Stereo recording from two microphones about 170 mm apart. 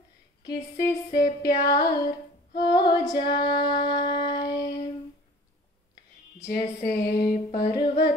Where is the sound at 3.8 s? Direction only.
70° left (ahead or behind).